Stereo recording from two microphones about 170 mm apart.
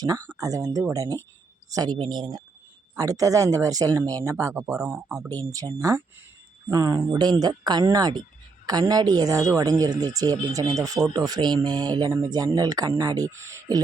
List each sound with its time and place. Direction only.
0.0 s speech: 20° right (ahead or behind)